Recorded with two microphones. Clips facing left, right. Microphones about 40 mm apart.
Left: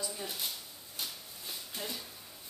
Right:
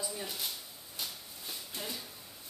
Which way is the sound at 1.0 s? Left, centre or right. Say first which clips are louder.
Even; centre.